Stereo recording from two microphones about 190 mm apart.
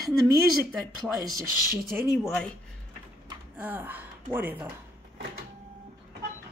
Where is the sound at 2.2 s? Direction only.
5° left (ahead or behind).